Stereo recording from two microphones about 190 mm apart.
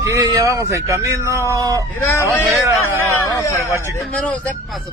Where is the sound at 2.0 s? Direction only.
15° left (ahead or behind).